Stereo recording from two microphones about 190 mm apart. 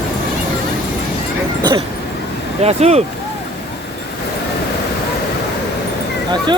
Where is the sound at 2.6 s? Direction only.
35° right (ahead or behind).